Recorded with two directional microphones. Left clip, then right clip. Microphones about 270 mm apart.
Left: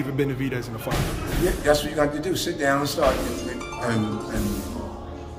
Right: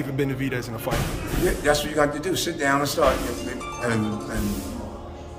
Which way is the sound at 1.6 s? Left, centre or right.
Centre.